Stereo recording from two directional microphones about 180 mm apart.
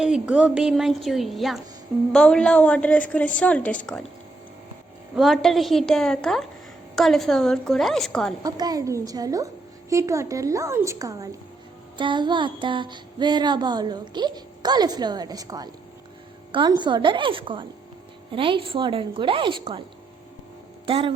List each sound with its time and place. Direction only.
0.0 s a woman's voice: 5° right (ahead or behind)
5.1 s a woman's voice: centre (ahead or behind)
8.4 s child singing: 20° right (ahead or behind)
9.9 s a woman's voice: 15° right (ahead or behind)
11.9 s child singing: 25° right (ahead or behind)
20.8 s speech: 30° right (ahead or behind)